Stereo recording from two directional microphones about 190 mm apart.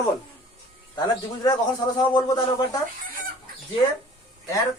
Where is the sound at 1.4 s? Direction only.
20° left (ahead or behind).